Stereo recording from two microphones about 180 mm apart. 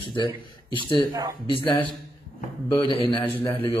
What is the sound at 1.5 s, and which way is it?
Speech, 30° left (ahead or behind).